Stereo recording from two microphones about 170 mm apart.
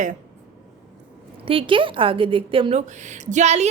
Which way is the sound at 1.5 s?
30° right (ahead or behind).